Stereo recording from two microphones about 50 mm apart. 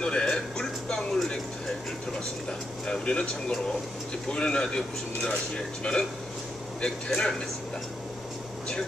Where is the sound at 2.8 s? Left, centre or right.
Centre.